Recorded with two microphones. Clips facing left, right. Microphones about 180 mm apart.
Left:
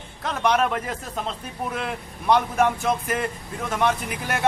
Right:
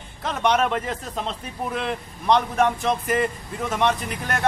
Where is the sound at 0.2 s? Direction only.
Centre (ahead or behind).